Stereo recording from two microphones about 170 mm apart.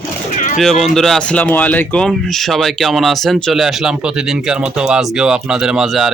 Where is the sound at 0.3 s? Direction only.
45° left (ahead or behind).